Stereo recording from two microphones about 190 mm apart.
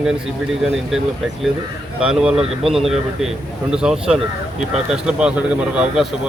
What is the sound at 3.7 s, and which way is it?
A man's voice, 5° right (ahead or behind).